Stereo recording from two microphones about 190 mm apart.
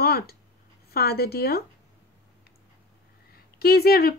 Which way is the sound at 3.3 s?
55° left (ahead or behind).